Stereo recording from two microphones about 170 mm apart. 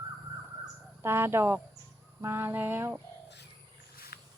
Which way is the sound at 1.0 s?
15° right (ahead or behind).